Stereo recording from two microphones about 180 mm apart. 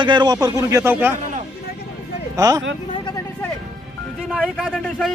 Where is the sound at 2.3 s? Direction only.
20° right (ahead or behind).